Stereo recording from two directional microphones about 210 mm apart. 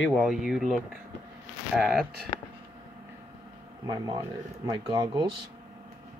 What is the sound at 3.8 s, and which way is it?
Speech, 20° right (ahead or behind).